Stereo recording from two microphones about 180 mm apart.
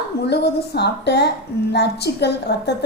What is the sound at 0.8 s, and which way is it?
A woman's voice, 65° left (ahead or behind).